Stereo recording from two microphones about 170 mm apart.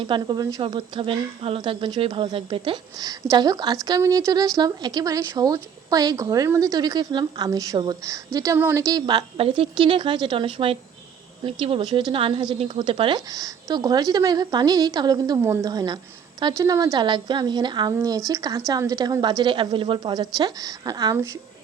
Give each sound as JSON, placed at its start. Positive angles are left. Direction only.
{"t": 0.0, "sound": "speech", "side_deg": -25}